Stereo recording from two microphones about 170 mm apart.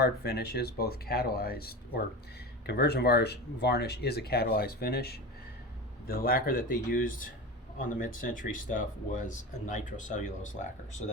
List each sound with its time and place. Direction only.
0.0 s speech: 70° left (ahead or behind); by 10.7 s 45° left (ahead or behind)